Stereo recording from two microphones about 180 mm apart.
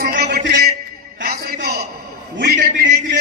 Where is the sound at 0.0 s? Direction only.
55° right (ahead or behind).